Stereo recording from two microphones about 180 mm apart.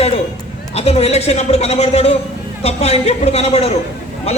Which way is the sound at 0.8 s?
35° left (ahead or behind).